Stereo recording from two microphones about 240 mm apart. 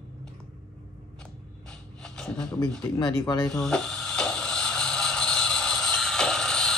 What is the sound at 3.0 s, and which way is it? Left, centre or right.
Speech, centre.